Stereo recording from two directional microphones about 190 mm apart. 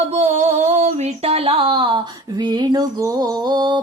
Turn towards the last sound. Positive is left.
turn(degrees=-20)  # may be behind; listen again after turning